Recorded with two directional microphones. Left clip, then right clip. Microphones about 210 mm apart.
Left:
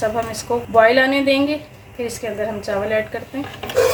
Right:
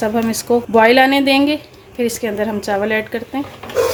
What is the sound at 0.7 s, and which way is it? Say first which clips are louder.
A woman's voice: right 2 dB; 45° right (ahead or behind).